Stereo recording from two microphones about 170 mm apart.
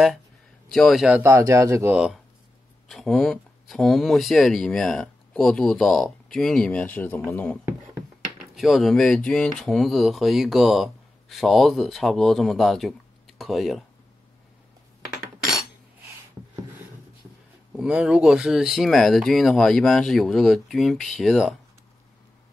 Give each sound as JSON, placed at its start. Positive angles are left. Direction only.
{"t": 0.7, "sound": "speech", "side_deg": 0}
{"t": 1.2, "sound": "speech", "side_deg": -15}
{"t": 8.5, "sound": "speech", "side_deg": 0}
{"t": 17.7, "sound": "speech", "side_deg": -5}